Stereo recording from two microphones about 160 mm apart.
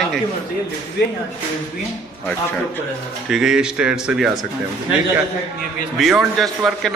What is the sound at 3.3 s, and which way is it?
A man's voice, 5° right (ahead or behind).